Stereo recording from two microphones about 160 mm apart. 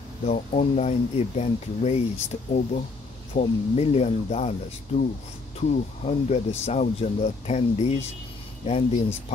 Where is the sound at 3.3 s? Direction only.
40° left (ahead or behind).